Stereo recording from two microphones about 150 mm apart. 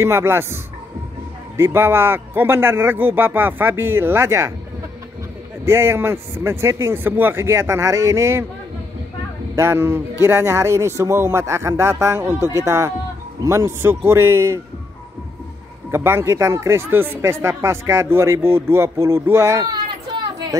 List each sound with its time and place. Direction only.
0.0 s speech: 15° right (ahead or behind)
1.6 s speech: 15° right (ahead or behind)
5.7 s speech: 15° right (ahead or behind)
9.6 s speech: 15° right (ahead or behind)
15.9 s speech: 15° right (ahead or behind)